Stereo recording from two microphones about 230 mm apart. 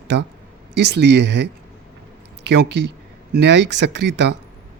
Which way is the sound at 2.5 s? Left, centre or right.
Right.